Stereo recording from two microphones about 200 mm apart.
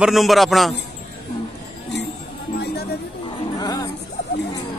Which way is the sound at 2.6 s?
55° left (ahead or behind).